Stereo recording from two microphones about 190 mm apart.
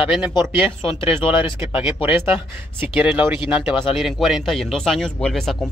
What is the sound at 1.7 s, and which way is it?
Speech, 10° right (ahead or behind).